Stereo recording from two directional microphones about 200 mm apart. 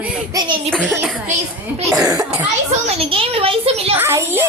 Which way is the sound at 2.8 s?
30° right (ahead or behind).